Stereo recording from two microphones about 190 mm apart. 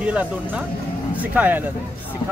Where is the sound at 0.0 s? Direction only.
5° right (ahead or behind).